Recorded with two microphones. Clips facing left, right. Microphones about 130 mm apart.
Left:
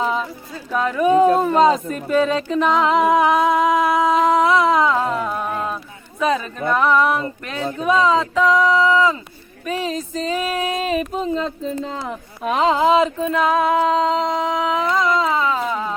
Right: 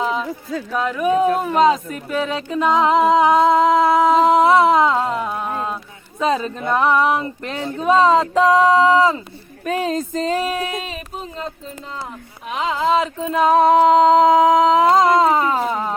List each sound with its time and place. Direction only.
0.0 s a sound: centre (ahead or behind)
0.8 s speech: 5° right (ahead or behind)
2.8 s music: 25° right (ahead or behind)
5.5 s a sound: 25° right (ahead or behind)
6.1 s speech: 25° right (ahead or behind)
9.6 s music: 50° right (ahead or behind)
10.9 s speech: 90° left
12.5 s speech: 40° left (ahead or behind)
13.4 s humming: 35° right (ahead or behind)